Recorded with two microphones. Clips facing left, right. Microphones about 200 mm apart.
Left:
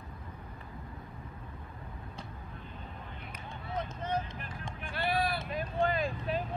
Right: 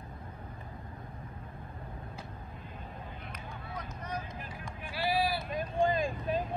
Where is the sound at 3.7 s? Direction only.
25° left (ahead or behind).